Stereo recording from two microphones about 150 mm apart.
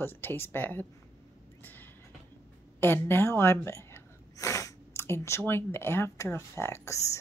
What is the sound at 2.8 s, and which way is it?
Speech, 15° left (ahead or behind).